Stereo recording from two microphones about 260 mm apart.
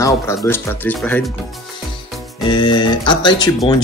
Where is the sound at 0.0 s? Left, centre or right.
Centre.